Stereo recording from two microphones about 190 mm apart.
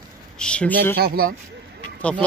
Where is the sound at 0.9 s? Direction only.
55° right (ahead or behind).